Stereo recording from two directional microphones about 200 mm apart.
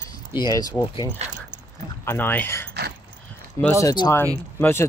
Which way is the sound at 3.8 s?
20° left (ahead or behind).